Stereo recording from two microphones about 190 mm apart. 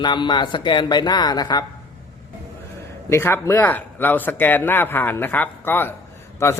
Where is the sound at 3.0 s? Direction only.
15° left (ahead or behind).